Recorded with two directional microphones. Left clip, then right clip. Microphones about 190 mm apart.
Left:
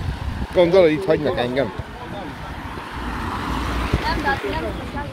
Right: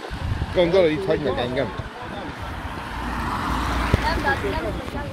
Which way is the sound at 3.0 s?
30° right (ahead or behind).